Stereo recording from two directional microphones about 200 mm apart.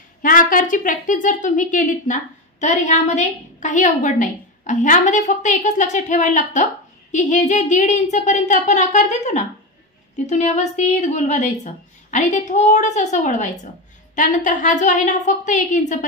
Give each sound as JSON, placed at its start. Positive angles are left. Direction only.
{"t": 0.2, "sound": "a woman's voice", "side_deg": 45}